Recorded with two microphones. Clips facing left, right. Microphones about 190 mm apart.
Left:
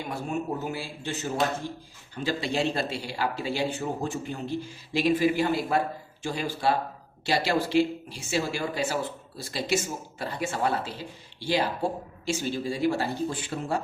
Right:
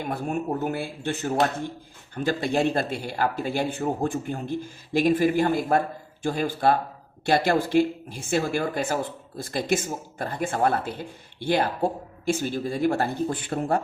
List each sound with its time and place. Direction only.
0.0 s speech: 55° right (ahead or behind)